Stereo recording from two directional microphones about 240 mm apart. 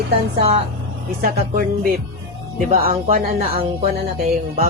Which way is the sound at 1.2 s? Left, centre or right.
Right.